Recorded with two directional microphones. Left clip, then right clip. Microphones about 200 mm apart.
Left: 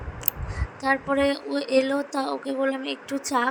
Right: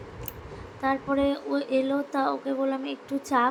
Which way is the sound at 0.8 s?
35° left (ahead or behind).